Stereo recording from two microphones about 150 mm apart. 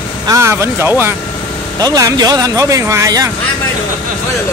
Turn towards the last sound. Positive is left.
turn(degrees=-20)  # may be behind; listen again after turning